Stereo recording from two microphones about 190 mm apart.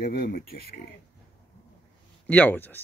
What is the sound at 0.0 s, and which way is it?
Speech, 50° left (ahead or behind).